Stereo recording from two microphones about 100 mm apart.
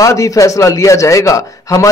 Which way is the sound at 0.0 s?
35° left (ahead or behind).